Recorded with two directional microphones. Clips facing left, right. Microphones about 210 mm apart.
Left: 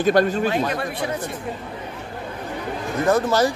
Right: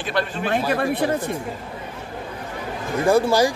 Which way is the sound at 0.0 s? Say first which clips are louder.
Left 7 dB; 40° left (ahead or behind).